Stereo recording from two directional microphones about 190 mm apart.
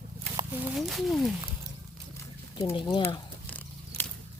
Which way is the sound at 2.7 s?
25° left (ahead or behind).